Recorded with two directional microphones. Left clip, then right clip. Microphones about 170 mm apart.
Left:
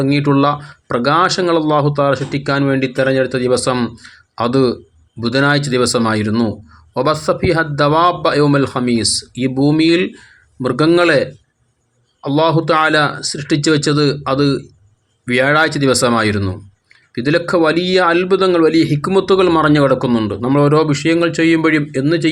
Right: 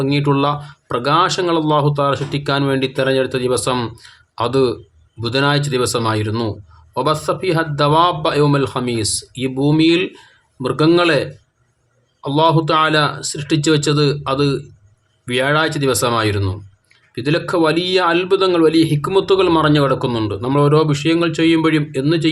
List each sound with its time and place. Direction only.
0.0 s a man's voice: 20° left (ahead or behind)